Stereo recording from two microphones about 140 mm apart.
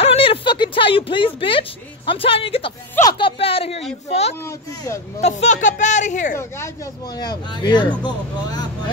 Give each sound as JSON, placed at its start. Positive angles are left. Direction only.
{"t": 0.0, "sound": "a sound", "side_deg": 45}
{"t": 3.0, "sound": "speech", "side_deg": 30}
{"t": 4.5, "sound": "speech", "side_deg": 20}
{"t": 5.2, "sound": "speech", "side_deg": 55}
{"t": 7.2, "sound": "speech", "side_deg": 30}